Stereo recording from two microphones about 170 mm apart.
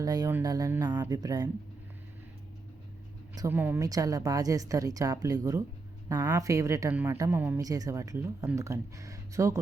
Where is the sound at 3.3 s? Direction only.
15° right (ahead or behind).